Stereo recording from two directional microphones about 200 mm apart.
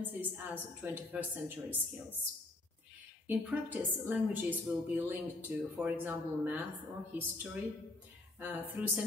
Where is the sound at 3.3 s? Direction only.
10° right (ahead or behind).